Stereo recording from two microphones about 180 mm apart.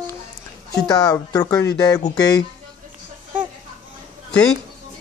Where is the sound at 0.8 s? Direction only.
20° left (ahead or behind).